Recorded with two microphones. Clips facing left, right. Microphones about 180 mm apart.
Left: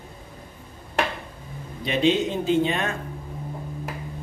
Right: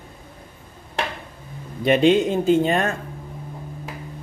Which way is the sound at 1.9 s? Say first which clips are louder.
Right 5 dB; 50° right (ahead or behind).